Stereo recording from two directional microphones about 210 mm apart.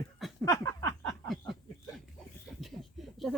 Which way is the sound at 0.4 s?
15° left (ahead or behind).